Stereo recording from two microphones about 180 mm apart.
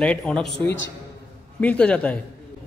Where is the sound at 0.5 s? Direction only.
90° left.